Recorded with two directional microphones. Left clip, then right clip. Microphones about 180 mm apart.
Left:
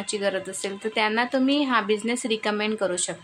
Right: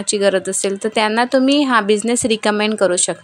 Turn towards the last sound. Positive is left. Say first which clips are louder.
# right 10 dB
turn(degrees=-35)  # may be behind; listen again after turning